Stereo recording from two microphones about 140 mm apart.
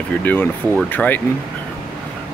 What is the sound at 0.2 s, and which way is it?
Speech, 15° left (ahead or behind).